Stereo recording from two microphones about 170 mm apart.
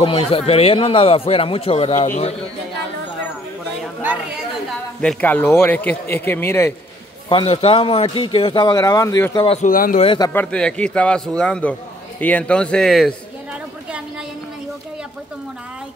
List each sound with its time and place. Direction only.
0.0 s a man's voice: 30° left (ahead or behind)
5.0 s a man's voice: 10° left (ahead or behind)
7.2 s a man's voice: 30° left (ahead or behind)
9.6 s speech: 55° left (ahead or behind)
9.9 s a man's voice: 30° left (ahead or behind)
10.2 s a man's voice: 10° left (ahead or behind)
12.2 s a sound: 10° left (ahead or behind)